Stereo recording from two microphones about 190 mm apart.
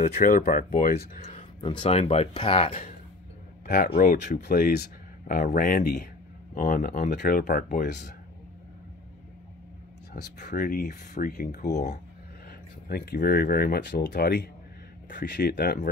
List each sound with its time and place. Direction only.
0.1 s speech: 50° left (ahead or behind)
1.2 s speech: 30° left (ahead or behind)
3.6 s speech: 45° left (ahead or behind)
10.4 s speech: 45° left (ahead or behind)